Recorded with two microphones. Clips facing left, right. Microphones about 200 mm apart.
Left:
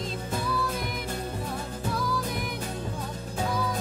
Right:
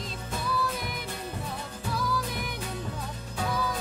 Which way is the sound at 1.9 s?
Centre (ahead or behind).